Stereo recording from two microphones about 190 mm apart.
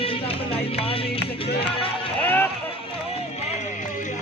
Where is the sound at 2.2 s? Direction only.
10° left (ahead or behind).